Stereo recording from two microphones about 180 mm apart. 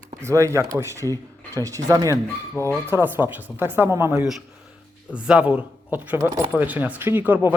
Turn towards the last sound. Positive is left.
turn(degrees=-10)  # may be behind; listen again after turning